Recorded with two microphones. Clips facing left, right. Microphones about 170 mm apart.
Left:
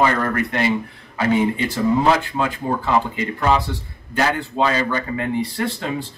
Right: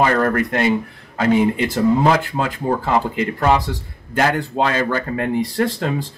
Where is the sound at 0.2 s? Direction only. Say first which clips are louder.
Right 3 dB; 50° right (ahead or behind).